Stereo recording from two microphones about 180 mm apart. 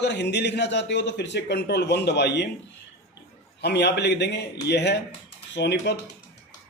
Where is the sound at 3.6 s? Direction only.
70° left (ahead or behind).